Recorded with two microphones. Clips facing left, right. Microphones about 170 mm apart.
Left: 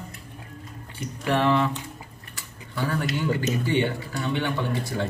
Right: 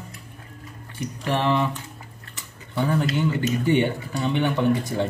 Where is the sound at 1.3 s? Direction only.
15° right (ahead or behind).